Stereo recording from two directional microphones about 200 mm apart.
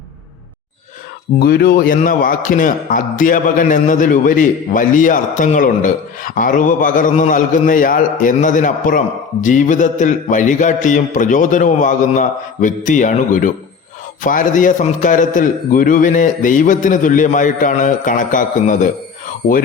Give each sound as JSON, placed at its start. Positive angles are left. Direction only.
{"t": 1.4, "sound": "a man's voice", "side_deg": 50}